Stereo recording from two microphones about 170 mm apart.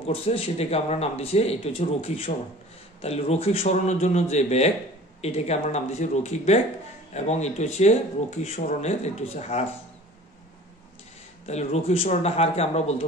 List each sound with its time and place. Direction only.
0.0 s speech: 35° left (ahead or behind)
11.4 s speech: 40° left (ahead or behind)